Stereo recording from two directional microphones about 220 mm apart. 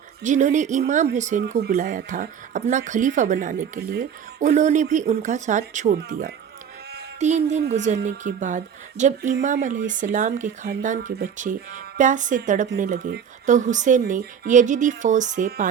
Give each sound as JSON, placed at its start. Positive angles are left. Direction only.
{"t": 0.2, "sound": "speech", "side_deg": -35}